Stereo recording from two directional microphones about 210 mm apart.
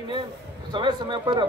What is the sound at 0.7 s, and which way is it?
Speech, 20° right (ahead or behind).